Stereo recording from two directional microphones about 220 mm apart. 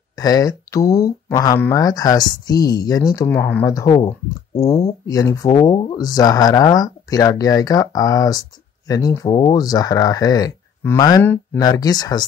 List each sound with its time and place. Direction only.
0.1 s speech: 15° left (ahead or behind)